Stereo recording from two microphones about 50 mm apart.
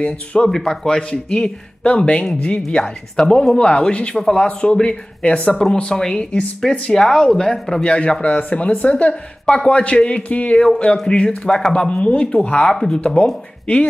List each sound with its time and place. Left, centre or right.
0.0 s speech: left
0.5 s speech: centre
4.1 s speech: centre
13.0 s speech: left